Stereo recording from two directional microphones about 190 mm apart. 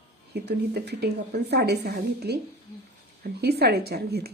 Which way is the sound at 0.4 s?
60° right (ahead or behind).